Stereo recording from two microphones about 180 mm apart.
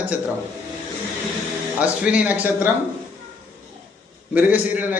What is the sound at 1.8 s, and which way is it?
Speech, 5° right (ahead or behind).